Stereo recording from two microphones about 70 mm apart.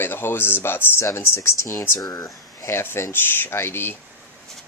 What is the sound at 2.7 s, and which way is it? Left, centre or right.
Speech, left.